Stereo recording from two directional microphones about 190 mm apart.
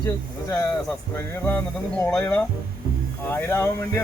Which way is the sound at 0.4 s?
15° left (ahead or behind).